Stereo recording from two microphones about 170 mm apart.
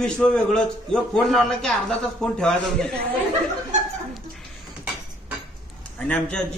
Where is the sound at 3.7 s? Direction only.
45° right (ahead or behind).